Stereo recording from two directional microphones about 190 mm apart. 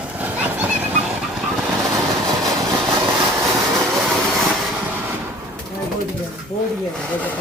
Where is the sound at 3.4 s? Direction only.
Centre (ahead or behind).